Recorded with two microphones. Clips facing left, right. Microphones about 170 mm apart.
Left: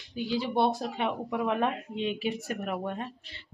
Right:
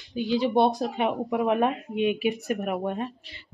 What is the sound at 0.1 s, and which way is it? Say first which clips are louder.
A woman's voice: right 6 dB; 20° right (ahead or behind).